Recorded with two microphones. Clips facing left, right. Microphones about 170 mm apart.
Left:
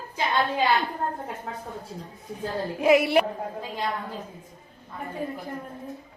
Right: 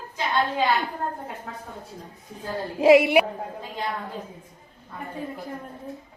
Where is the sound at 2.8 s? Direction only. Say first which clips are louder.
Right 4 dB; 25° right (ahead or behind).